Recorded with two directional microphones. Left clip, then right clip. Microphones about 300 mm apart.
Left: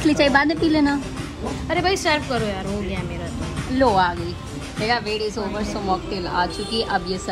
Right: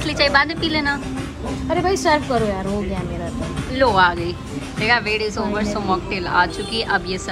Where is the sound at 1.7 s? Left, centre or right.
Centre.